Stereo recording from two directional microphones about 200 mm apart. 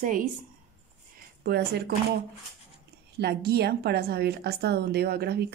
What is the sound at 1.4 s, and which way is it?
Speech, 55° right (ahead or behind).